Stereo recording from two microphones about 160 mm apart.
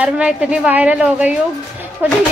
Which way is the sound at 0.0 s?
5° right (ahead or behind).